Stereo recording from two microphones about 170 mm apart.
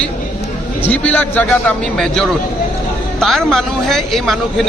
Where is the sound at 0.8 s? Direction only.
10° left (ahead or behind).